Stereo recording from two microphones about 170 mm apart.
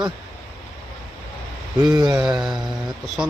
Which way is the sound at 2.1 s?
5° right (ahead or behind).